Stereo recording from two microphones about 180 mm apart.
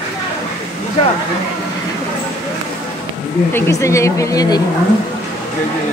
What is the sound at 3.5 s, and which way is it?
Speech, 15° left (ahead or behind).